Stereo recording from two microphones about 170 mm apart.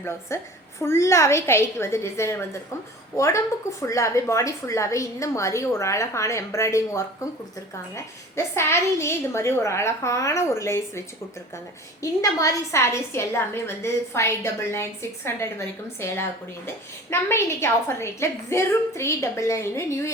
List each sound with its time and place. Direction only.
0.3 s a woman's voice: 15° left (ahead or behind)
12.2 s a woman's voice: 20° left (ahead or behind)